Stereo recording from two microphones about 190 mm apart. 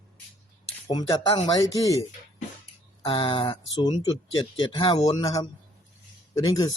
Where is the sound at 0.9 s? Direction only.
20° left (ahead or behind).